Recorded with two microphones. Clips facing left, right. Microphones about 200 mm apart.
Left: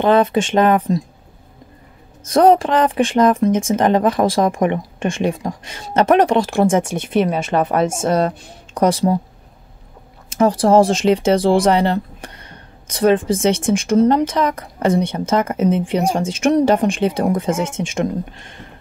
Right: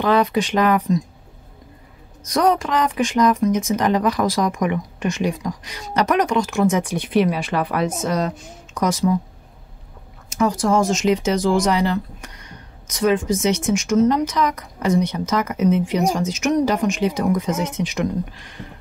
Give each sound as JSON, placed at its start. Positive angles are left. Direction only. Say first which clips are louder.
{"t": 0.0, "sound": "speech", "louder": "left 4 dB", "side_deg": 25}
{"t": 2.2, "sound": "speech", "louder": "left 6 dB", "side_deg": 30}
{"t": 3.5, "sound": "speech", "louder": "left 3 dB", "side_deg": 50}
{"t": 3.8, "sound": "speech", "louder": "left 5 dB", "side_deg": 30}
{"t": 10.3, "sound": "speech", "louder": "left 6 dB", "side_deg": 30}